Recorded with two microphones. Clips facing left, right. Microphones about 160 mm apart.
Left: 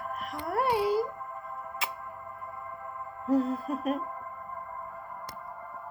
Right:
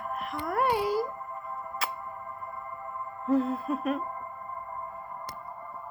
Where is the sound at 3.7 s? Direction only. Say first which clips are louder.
Right 1 dB; 40° left (ahead or behind).